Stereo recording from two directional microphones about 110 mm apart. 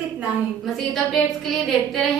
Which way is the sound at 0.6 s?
Centre (ahead or behind).